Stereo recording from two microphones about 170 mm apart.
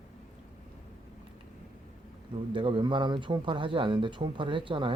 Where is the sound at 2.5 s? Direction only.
30° right (ahead or behind).